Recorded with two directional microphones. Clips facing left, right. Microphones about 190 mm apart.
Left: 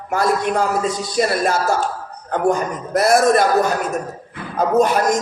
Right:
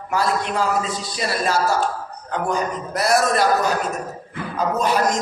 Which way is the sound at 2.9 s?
50° left (ahead or behind).